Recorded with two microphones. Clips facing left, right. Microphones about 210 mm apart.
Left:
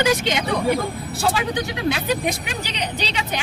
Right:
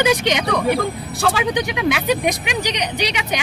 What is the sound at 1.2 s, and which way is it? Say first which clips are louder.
Speech: right 2 dB; 90° right.